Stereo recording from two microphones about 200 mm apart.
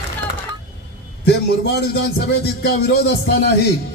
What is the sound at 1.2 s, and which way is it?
A man's voice, 55° left (ahead or behind).